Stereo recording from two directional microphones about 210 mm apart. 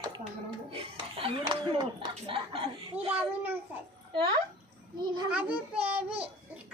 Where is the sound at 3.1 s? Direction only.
10° right (ahead or behind).